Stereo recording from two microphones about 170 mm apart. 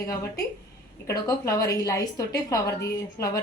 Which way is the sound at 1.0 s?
20° left (ahead or behind).